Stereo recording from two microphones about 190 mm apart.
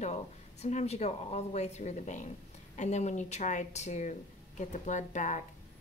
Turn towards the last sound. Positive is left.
turn(degrees=40)  # may be behind; listen again after turning